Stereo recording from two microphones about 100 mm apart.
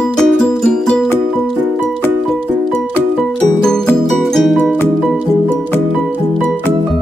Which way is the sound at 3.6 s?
5° left (ahead or behind).